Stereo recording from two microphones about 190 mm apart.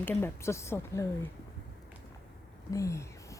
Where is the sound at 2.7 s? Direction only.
15° left (ahead or behind).